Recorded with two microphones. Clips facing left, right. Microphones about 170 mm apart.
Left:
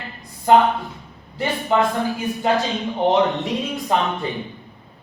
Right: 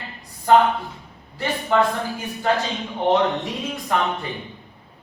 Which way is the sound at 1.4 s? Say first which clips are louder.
Left 1 dB; 15° left (ahead or behind).